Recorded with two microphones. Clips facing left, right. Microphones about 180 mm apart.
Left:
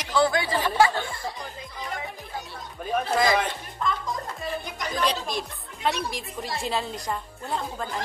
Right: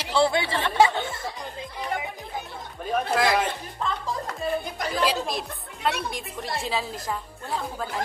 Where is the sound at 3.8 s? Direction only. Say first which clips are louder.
Left 1 dB; 30° right (ahead or behind).